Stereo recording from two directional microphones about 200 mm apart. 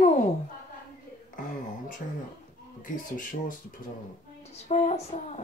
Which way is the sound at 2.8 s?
40° left (ahead or behind).